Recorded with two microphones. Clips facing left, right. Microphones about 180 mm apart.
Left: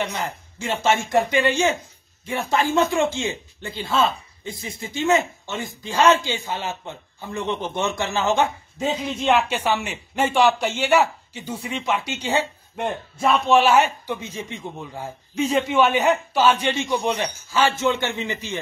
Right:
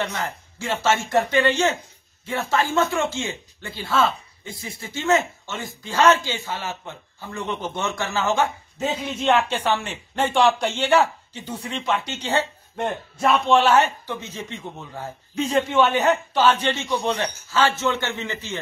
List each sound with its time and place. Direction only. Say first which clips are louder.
0.0 s speech: left 1 dB; 15° left (ahead or behind)
8.8 s speech: left 1 dB; 5° right (ahead or behind)
9.3 s speech: even; 10° left (ahead or behind)
12.8 s speech: even; centre (ahead or behind)